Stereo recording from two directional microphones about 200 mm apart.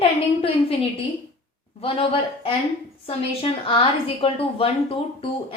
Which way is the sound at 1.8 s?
25° left (ahead or behind).